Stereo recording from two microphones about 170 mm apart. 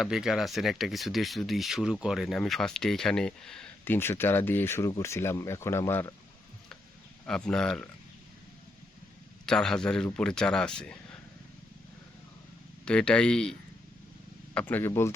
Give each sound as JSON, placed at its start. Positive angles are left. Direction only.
{"t": 0.0, "sound": "speech", "side_deg": 0}
{"t": 7.3, "sound": "speech", "side_deg": 5}
{"t": 9.5, "sound": "speech", "side_deg": 5}
{"t": 12.8, "sound": "speech", "side_deg": 5}